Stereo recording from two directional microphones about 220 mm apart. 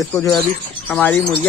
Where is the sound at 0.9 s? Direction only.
5° left (ahead or behind).